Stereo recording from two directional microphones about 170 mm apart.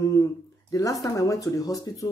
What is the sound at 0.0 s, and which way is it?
Speech, 20° left (ahead or behind).